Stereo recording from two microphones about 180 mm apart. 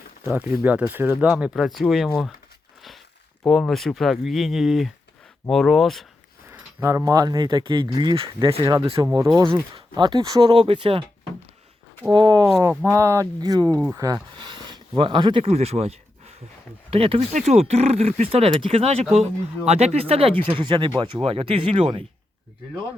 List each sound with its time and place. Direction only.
0.3 s speech: 10° right (ahead or behind)
3.4 s speech: 5° left (ahead or behind)
6.5 s speech: 15° right (ahead or behind); by 11.0 s 30° right (ahead or behind)
12.1 s speech: 20° right (ahead or behind)